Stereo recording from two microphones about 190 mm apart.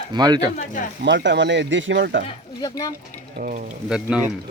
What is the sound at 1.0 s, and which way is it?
Speech, 65° right (ahead or behind).